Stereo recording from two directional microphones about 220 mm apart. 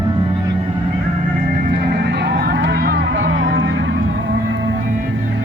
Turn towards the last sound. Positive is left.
turn(degrees=-60)  # may be behind; listen again after turning